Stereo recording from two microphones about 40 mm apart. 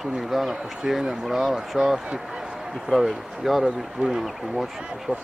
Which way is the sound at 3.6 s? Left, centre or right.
Centre.